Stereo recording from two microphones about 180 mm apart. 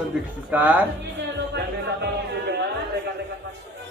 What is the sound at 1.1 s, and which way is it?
Music, 75° right (ahead or behind).